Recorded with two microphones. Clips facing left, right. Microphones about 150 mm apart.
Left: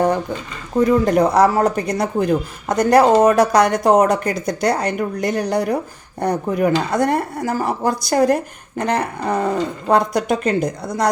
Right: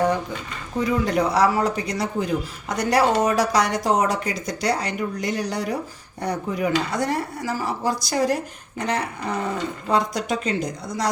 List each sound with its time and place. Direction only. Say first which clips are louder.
0.8 s a woman's voice: left 7 dB; 50° left (ahead or behind)